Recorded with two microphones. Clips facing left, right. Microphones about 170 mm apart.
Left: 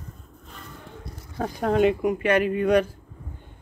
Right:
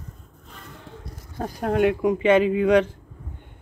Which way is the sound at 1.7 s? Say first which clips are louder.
Right 1 dB; 60° right (ahead or behind).